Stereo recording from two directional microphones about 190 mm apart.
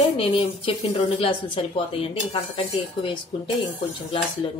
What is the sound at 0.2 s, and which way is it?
A woman's voice, 30° left (ahead or behind).